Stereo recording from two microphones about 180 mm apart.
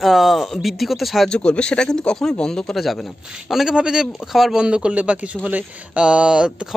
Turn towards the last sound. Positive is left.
turn(degrees=-5)  # may be behind; listen again after turning